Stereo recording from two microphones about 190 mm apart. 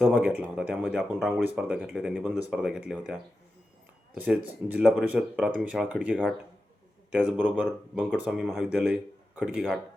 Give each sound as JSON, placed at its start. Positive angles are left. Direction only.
{"t": 0.0, "sound": "speech", "side_deg": -5}
{"t": 7.2, "sound": "speech", "side_deg": -10}